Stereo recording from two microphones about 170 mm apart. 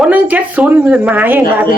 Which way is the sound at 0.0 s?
10° right (ahead or behind).